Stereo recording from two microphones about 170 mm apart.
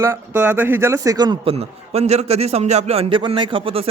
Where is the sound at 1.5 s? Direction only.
40° right (ahead or behind).